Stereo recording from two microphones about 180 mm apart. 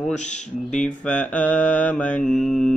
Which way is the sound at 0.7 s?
5° left (ahead or behind).